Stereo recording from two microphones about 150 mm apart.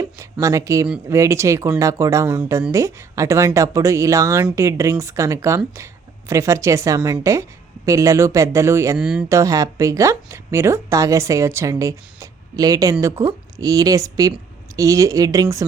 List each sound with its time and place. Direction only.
0.0 s speech: 20° right (ahead or behind)
9.0 s speech: 5° right (ahead or behind)
9.3 s speech: 20° right (ahead or behind)